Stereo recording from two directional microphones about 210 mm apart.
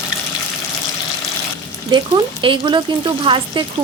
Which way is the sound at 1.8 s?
20° right (ahead or behind).